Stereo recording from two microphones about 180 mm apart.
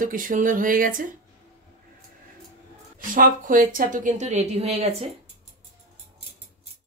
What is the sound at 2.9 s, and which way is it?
A woman's voice, 50° right (ahead or behind).